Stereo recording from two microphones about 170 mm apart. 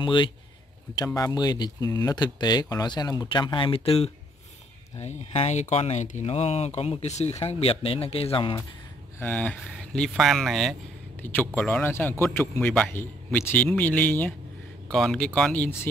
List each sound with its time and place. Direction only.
0.0 s speech: 30° left (ahead or behind)
9.2 s a man's voice: 5° left (ahead or behind)